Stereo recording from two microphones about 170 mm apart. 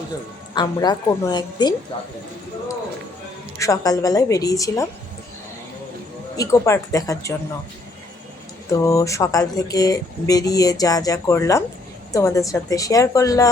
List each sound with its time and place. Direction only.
0.5 s speech: 25° left (ahead or behind)
3.6 s speech: 20° left (ahead or behind)
6.3 s speech: 20° left (ahead or behind)
8.7 s speech: 20° left (ahead or behind)